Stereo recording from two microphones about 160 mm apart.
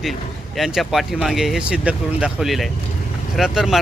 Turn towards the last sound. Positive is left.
turn(degrees=0)  # may be behind; listen again after turning